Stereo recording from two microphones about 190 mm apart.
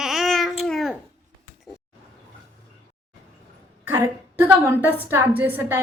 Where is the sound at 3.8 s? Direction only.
10° right (ahead or behind).